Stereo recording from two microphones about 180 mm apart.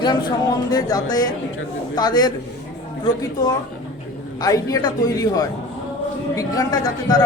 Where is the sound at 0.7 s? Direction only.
20° left (ahead or behind).